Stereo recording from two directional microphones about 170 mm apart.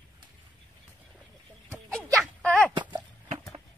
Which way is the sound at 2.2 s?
5° left (ahead or behind).